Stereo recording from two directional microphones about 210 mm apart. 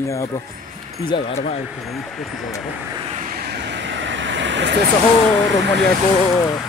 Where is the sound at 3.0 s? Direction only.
35° right (ahead or behind); by 4.8 s 60° right (ahead or behind).